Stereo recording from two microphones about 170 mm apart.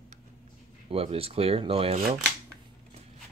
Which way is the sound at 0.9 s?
35° right (ahead or behind).